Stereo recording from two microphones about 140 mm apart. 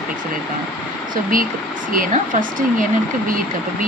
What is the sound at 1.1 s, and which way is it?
Speech, 80° right.